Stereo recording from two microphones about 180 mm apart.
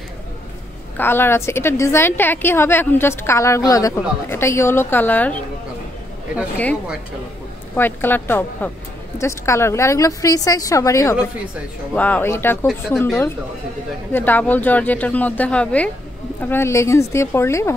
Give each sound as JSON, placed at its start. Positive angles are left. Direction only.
{"t": 0.9, "sound": "a woman's voice", "side_deg": 10}
{"t": 7.7, "sound": "a woman's voice", "side_deg": 10}